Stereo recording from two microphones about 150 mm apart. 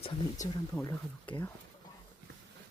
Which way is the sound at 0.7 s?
15° left (ahead or behind).